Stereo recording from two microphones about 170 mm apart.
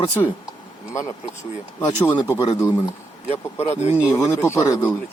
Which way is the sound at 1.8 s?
20° left (ahead or behind).